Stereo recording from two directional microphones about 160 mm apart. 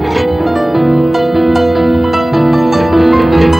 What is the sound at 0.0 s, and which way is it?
Music, centre (ahead or behind).